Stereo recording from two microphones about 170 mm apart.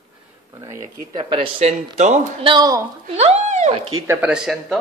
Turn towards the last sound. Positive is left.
turn(degrees=0)  # may be behind; listen again after turning